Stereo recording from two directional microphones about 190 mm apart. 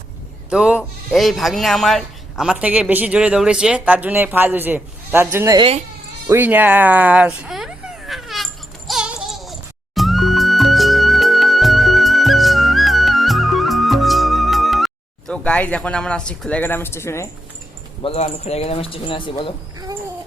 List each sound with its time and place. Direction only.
0.5 s speech: 5° right (ahead or behind)
5.5 s speech: 30° right (ahead or behind)
6.2 s a sound: 10° right (ahead or behind)
8.9 s music: 5° right (ahead or behind); by 17.2 s 15° left (ahead or behind)
18.0 s speech: 35° left (ahead or behind)